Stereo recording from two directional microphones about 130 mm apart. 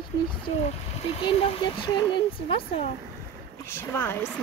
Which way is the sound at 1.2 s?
45° left (ahead or behind).